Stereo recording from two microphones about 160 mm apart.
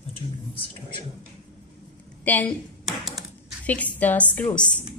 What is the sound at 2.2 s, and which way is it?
Speech, 10° left (ahead or behind).